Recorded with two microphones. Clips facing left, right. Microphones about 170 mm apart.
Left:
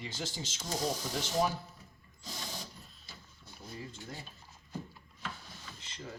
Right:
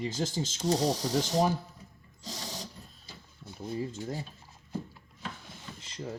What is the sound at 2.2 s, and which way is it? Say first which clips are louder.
Sewing machine: right 3 dB; 35° right (ahead or behind).